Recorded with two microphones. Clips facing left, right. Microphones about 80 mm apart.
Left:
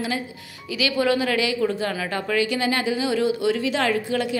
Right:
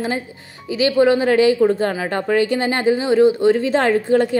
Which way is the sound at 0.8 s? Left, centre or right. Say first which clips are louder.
Right 7 dB; right.